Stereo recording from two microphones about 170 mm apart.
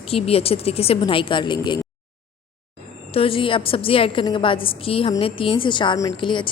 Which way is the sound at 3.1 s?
30° left (ahead or behind).